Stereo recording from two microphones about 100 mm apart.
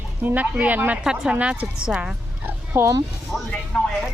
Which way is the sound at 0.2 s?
15° right (ahead or behind).